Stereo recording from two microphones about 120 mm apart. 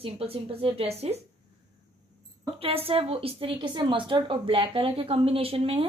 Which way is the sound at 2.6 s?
55° right (ahead or behind).